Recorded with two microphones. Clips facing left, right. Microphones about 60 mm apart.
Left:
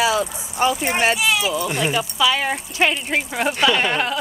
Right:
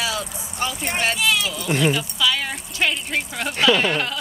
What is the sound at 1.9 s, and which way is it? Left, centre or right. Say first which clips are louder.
Speech: left 4 dB; left.